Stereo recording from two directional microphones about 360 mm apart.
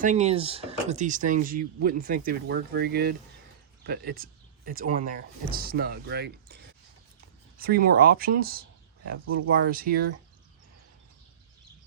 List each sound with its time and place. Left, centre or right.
0.0 s speech: centre
7.6 s speech: right